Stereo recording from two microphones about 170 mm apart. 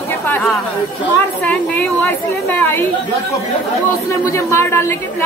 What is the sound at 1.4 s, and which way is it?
A woman's voice, 10° left (ahead or behind).